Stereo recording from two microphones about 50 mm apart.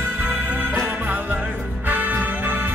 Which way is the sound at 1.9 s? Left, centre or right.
Right.